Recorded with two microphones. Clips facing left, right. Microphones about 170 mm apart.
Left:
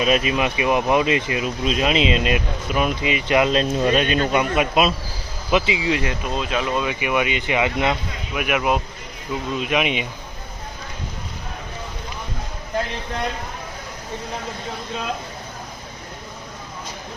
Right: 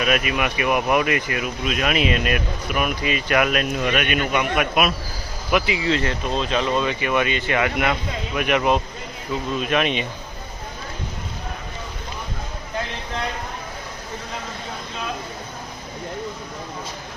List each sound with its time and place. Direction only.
0.0 s speech: 30° left (ahead or behind)
8.4 s speech: 5° left (ahead or behind)